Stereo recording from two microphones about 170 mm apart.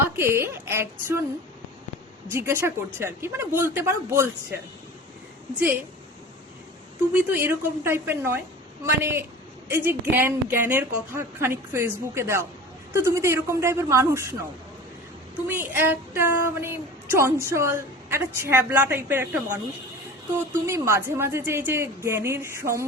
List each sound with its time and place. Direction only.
0.2 s speech: 15° right (ahead or behind)
2.2 s speech: 15° right (ahead or behind)
7.1 s speech: 10° right (ahead or behind)
15.4 s speech: 15° right (ahead or behind)
20.7 s speech: 15° right (ahead or behind)